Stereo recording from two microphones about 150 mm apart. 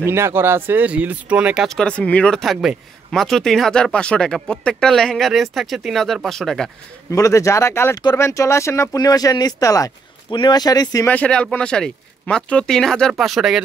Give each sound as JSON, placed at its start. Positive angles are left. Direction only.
{"t": 0.0, "sound": "speech", "side_deg": -15}
{"t": 7.1, "sound": "speech", "side_deg": 20}
{"t": 11.1, "sound": "speech", "side_deg": 10}